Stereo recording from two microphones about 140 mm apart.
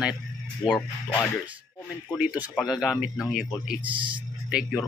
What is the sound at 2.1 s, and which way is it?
Speech, 10° right (ahead or behind).